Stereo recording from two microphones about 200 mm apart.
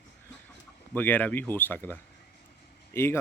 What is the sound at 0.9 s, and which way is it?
Speech, 10° left (ahead or behind).